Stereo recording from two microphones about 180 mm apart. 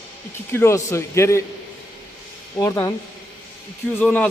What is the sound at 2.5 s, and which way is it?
Speech, 15° left (ahead or behind).